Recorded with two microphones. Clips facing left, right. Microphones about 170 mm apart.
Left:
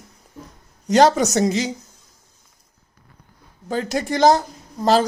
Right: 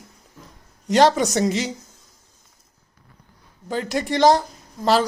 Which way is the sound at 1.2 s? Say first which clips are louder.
Left 2 dB; 45° left (ahead or behind).